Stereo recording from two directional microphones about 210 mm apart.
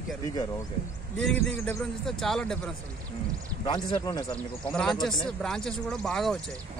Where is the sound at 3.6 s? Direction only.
20° left (ahead or behind).